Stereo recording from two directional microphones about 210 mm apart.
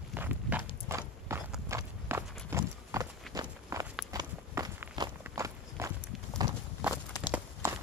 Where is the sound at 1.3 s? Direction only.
15° right (ahead or behind).